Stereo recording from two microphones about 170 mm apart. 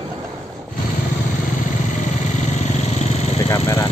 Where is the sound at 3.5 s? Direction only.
15° left (ahead or behind).